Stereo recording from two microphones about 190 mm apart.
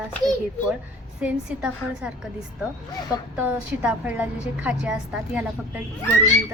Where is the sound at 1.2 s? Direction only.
5° right (ahead or behind).